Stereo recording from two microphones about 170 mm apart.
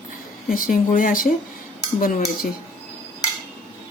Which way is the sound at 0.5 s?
55° left (ahead or behind).